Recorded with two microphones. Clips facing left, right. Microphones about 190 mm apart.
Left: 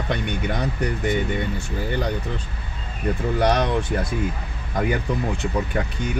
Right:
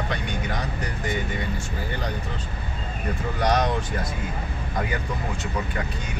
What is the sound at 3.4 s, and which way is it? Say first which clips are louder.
Speech: left 2 dB; 60° left (ahead or behind).